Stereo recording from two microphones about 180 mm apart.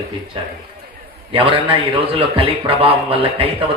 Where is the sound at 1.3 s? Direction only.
30° right (ahead or behind).